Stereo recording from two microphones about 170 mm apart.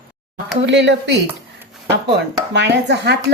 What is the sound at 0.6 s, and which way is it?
Speech, 90° right.